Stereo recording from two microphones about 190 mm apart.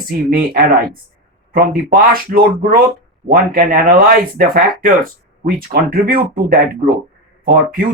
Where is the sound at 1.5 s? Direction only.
50° right (ahead or behind).